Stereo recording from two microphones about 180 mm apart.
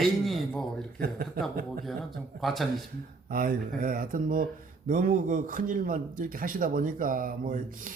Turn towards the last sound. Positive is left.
turn(degrees=-50)  # may be behind; listen again after turning